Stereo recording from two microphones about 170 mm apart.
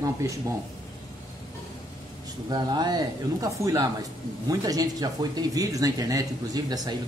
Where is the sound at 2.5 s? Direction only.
25° right (ahead or behind).